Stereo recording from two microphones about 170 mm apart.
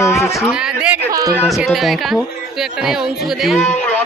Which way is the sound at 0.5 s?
5° right (ahead or behind).